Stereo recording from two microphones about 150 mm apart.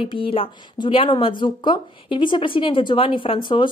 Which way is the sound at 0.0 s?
35° left (ahead or behind).